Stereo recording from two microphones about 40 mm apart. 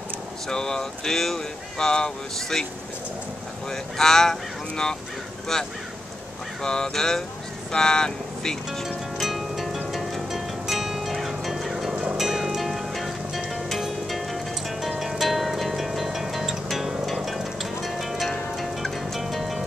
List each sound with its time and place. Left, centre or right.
0.5 s speech: centre
8.8 s music: centre